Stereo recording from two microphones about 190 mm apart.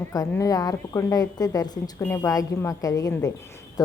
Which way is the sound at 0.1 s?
20° left (ahead or behind).